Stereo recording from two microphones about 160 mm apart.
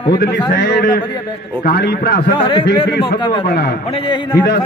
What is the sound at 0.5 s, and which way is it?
A man's voice, 75° left (ahead or behind).